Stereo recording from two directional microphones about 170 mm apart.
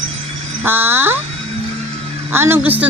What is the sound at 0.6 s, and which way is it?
Speech, 15° right (ahead or behind).